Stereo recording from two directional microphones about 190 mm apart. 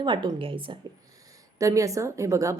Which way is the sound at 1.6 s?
15° right (ahead or behind).